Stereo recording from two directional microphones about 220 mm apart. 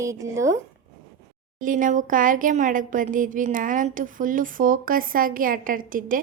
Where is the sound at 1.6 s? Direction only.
35° right (ahead or behind).